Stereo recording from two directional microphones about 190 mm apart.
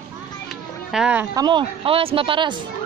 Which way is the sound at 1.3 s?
20° right (ahead or behind).